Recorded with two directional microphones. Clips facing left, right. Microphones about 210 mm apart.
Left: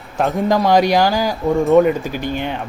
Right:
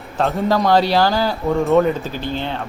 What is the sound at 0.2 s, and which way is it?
Speech, 15° left (ahead or behind).